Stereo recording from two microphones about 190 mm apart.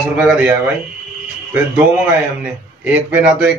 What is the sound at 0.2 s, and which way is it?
Speech, 5° right (ahead or behind).